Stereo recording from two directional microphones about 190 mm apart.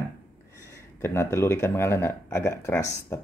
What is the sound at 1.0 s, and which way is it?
Speech, 15° left (ahead or behind).